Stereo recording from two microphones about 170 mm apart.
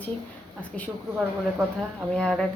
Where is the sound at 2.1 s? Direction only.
5° left (ahead or behind).